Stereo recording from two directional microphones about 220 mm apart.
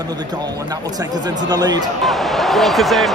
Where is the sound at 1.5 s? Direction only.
20° right (ahead or behind).